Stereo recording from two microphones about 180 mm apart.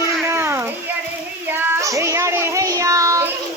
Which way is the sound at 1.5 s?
10° right (ahead or behind).